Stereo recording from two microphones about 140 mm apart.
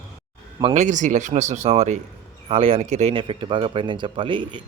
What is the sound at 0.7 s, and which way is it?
Speech, 60° right (ahead or behind).